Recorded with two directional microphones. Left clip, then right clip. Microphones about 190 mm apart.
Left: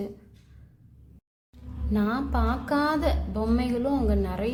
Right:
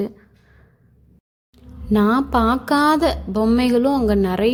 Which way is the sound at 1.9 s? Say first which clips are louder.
Right 11 dB; 45° right (ahead or behind).